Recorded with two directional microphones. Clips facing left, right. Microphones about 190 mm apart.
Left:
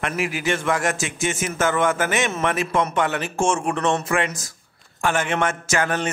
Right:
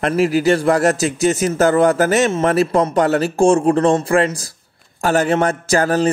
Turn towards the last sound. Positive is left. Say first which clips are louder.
# right 7 dB
turn(degrees=-35)  # may be behind; listen again after turning